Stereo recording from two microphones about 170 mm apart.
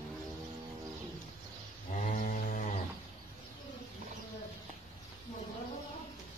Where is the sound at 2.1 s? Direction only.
50° left (ahead or behind).